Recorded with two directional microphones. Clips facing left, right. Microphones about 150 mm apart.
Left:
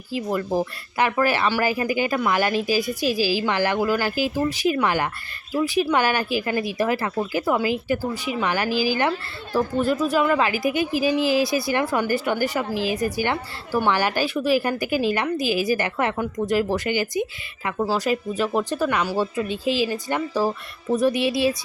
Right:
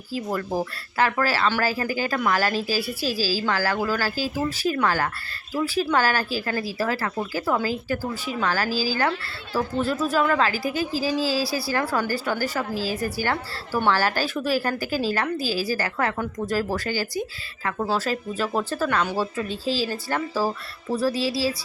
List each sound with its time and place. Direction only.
0.3 s speech: 15° left (ahead or behind)